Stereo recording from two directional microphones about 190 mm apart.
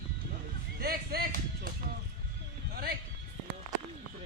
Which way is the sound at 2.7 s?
55° right (ahead or behind).